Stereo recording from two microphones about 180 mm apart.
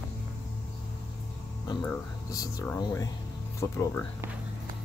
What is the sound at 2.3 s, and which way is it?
Speech, 20° left (ahead or behind).